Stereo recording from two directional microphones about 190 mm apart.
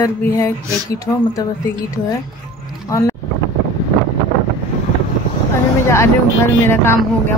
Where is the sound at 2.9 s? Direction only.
15° left (ahead or behind).